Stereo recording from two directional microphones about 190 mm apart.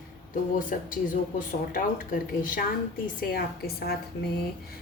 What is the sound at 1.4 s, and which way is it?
A woman's voice, 45° left (ahead or behind).